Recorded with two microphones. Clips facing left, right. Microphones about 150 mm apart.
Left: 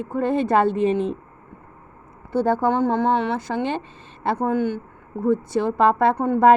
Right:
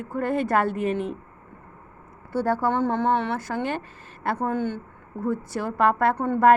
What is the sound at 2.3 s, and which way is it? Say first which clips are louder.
Speech: left 4 dB; 20° left (ahead or behind).